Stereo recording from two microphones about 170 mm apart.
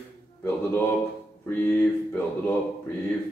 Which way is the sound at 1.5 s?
10° left (ahead or behind).